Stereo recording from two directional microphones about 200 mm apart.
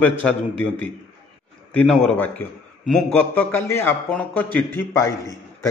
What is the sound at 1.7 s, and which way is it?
A man's voice, 5° left (ahead or behind).